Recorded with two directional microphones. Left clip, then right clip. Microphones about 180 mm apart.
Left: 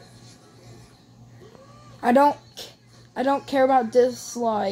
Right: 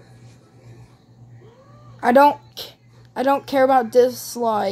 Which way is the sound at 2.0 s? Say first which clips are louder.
Right 4 dB; 20° right (ahead or behind).